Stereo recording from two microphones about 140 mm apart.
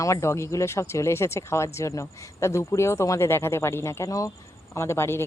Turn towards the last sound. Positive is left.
turn(degrees=20)  # may be behind; listen again after turning